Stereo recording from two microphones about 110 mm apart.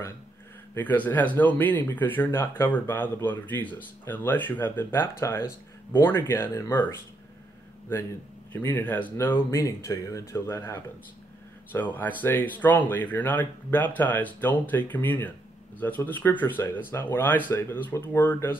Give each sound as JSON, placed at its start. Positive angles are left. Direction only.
{"t": 0.7, "sound": "speech", "side_deg": 15}
{"t": 8.5, "sound": "speech", "side_deg": 15}